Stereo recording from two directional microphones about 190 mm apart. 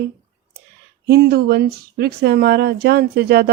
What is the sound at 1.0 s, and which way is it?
Speech, 55° right (ahead or behind).